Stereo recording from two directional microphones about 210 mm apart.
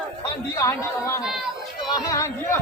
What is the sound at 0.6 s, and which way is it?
Speech, 15° left (ahead or behind).